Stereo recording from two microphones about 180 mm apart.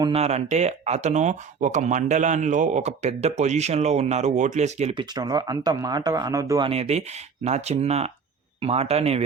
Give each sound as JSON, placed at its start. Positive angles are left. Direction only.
{"t": 0.1, "sound": "speech", "side_deg": -35}
{"t": 5.1, "sound": "speech", "side_deg": -20}
{"t": 6.7, "sound": "speech", "side_deg": -35}